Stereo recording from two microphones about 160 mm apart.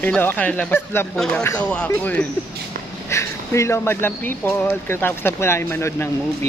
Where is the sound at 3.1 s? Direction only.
20° left (ahead or behind).